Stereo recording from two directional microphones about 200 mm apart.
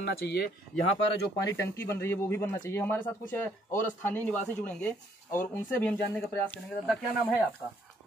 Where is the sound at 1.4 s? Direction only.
15° left (ahead or behind).